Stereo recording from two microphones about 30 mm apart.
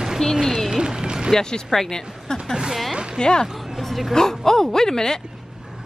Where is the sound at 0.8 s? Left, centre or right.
Right.